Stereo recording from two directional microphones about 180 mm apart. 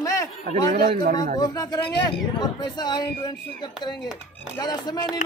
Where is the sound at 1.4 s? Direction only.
20° left (ahead or behind).